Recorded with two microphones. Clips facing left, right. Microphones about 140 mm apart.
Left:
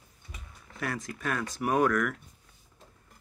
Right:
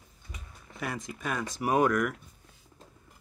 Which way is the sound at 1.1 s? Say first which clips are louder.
Left 1 dB; centre (ahead or behind).